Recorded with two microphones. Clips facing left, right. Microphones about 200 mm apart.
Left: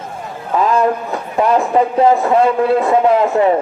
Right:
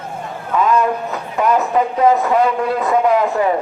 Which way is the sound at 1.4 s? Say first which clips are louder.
Left 2 dB; 30° left (ahead or behind).